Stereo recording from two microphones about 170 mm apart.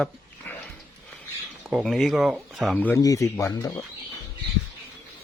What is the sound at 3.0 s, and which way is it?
Speech, 20° left (ahead or behind).